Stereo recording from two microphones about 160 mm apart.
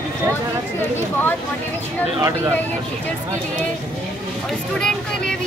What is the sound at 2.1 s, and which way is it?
Speech, 20° right (ahead or behind).